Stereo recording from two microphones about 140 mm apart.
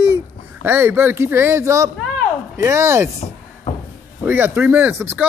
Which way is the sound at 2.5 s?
20° right (ahead or behind).